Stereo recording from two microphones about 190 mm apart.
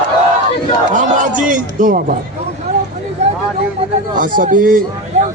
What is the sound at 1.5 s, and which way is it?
Speech, 45° right (ahead or behind).